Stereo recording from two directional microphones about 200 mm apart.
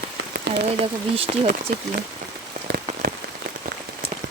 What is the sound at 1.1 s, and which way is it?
Speech, 30° right (ahead or behind).